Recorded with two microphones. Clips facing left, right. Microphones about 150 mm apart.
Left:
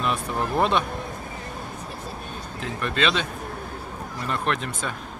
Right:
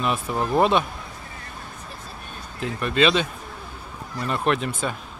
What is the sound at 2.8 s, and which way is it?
Speech, 10° right (ahead or behind).